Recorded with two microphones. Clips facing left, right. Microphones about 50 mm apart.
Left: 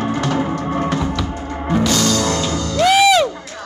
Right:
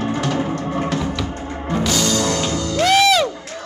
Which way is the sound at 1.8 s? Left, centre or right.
Centre.